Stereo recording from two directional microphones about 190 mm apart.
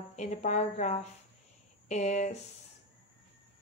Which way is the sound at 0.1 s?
35° left (ahead or behind).